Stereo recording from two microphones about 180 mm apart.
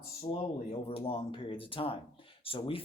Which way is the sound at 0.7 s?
30° left (ahead or behind).